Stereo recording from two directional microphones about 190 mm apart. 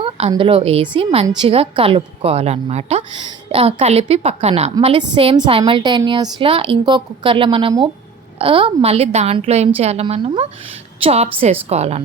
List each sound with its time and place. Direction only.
0.0 s a woman's voice: 30° right (ahead or behind)